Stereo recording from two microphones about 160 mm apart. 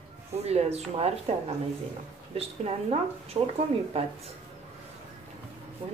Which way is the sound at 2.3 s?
40° right (ahead or behind).